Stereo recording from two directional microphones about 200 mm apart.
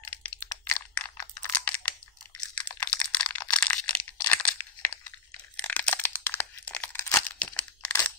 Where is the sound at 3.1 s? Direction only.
5° left (ahead or behind).